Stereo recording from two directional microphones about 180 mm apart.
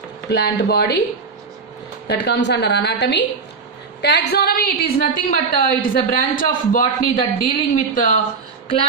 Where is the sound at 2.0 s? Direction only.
70° left (ahead or behind).